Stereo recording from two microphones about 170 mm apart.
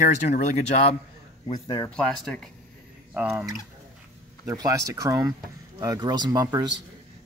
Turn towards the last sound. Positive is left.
turn(degrees=-25)  # may be behind; listen again after turning